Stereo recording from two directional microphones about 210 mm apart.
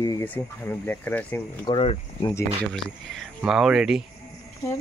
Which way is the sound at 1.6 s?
25° left (ahead or behind).